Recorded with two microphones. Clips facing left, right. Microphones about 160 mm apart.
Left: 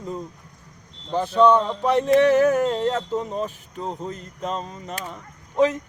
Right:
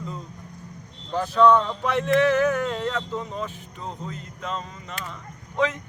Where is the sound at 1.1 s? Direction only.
30° left (ahead or behind).